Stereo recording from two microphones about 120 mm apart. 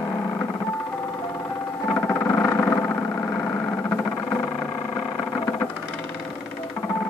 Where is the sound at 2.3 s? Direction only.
20° left (ahead or behind).